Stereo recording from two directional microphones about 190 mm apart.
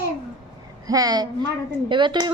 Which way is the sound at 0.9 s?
20° right (ahead or behind).